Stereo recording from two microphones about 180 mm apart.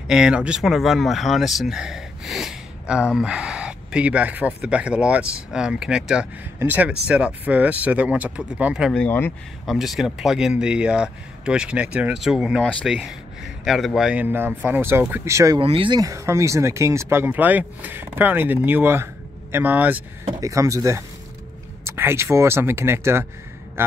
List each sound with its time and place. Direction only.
0.1 s speech: 5° right (ahead or behind)
8.9 s speech: 10° left (ahead or behind)
9.7 s speech: centre (ahead or behind); by 15.6 s 15° right (ahead or behind)
15.6 s speech: 30° right (ahead or behind); by 23.2 s 15° right (ahead or behind)